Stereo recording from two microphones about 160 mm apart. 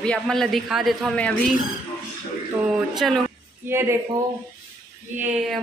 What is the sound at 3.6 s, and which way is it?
Speech, 15° right (ahead or behind).